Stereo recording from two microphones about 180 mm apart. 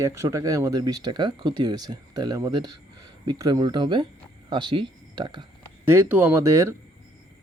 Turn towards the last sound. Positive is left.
turn(degrees=-15)  # may be behind; listen again after turning